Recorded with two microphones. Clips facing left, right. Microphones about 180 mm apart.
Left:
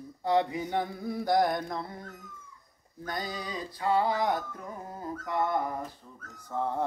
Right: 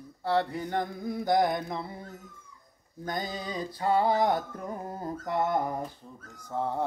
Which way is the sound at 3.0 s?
20° right (ahead or behind).